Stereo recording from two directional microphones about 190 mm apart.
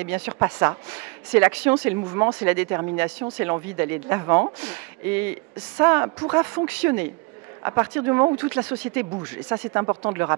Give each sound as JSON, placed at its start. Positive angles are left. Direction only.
{"t": 0.0, "sound": "speech", "side_deg": -10}
{"t": 9.7, "sound": "speech", "side_deg": -20}